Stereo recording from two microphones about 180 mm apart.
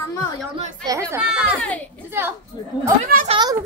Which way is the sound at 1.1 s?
5° right (ahead or behind).